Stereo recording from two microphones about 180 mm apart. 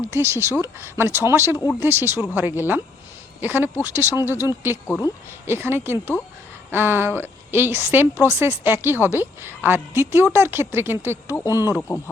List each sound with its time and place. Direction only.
0.1 s a woman's voice: 15° right (ahead or behind)
4.9 s speech: 20° left (ahead or behind)
5.5 s a woman's voice: 15° right (ahead or behind)
11.8 s speech: 15° left (ahead or behind)